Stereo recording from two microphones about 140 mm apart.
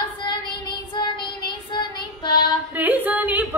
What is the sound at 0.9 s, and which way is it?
Child singing, 30° left (ahead or behind).